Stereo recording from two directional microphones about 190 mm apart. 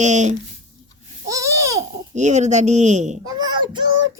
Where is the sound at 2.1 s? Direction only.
40° right (ahead or behind).